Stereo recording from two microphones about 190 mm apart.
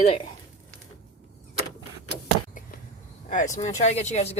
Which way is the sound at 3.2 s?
40° left (ahead or behind).